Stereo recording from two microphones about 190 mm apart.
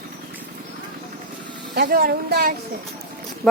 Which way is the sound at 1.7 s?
50° right (ahead or behind).